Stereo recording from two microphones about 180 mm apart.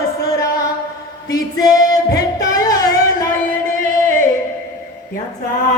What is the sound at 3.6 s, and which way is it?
Music, 50° right (ahead or behind).